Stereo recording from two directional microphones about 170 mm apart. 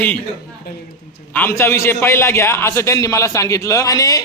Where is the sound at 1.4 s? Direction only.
15° left (ahead or behind).